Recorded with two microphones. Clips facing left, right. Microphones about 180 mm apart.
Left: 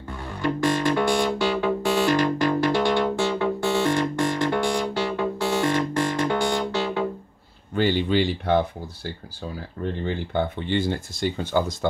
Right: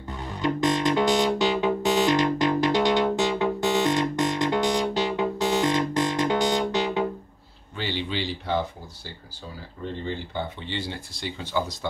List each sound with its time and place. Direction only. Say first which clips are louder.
0.1 s music: even; 20° right (ahead or behind)
7.7 s speech: left 9 dB; 50° left (ahead or behind)
10.0 s speech: left 6 dB; 55° left (ahead or behind)